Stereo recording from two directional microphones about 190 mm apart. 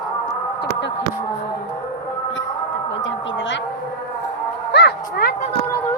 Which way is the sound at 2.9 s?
80° left.